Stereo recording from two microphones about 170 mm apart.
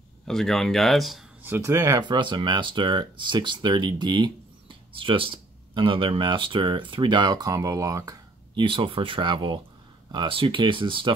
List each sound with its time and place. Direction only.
0.3 s speech: centre (ahead or behind)
1.4 s speech: 15° right (ahead or behind)